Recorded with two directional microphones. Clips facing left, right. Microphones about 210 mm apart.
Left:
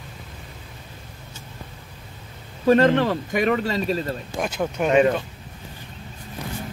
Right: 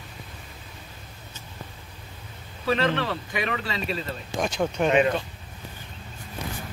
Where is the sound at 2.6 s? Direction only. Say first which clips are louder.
Left 8 dB; 45° left (ahead or behind).